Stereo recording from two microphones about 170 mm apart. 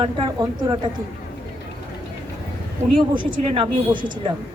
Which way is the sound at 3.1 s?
30° right (ahead or behind).